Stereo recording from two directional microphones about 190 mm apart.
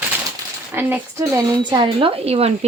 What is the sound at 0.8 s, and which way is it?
Speech, 10° right (ahead or behind).